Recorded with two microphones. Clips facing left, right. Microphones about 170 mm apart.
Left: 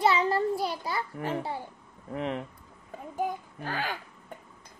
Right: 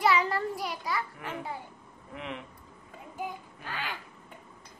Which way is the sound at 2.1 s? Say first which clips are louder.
Left 7 dB; 40° left (ahead or behind).